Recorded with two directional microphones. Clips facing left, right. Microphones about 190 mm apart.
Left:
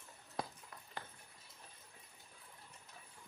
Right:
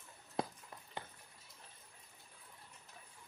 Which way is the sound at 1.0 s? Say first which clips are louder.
Right 2 dB; 20° right (ahead or behind).